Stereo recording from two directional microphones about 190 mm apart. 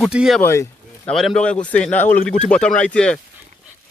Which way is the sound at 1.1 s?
5° left (ahead or behind).